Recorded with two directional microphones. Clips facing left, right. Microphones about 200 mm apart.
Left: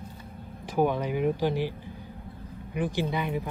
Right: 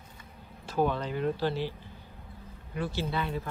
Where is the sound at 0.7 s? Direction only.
15° left (ahead or behind).